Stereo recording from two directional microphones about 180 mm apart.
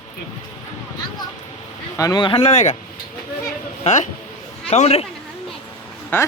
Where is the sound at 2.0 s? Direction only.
20° left (ahead or behind); by 2.7 s 40° left (ahead or behind).